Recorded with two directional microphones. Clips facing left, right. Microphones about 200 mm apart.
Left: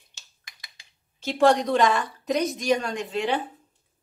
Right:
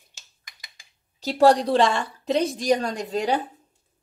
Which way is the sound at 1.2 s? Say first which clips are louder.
Right 2 dB; 35° right (ahead or behind).